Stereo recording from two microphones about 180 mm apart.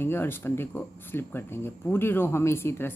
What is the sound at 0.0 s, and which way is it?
Speech, 10° left (ahead or behind).